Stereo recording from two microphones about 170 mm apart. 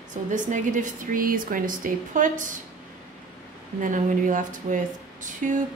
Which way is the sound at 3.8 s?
50° right (ahead or behind).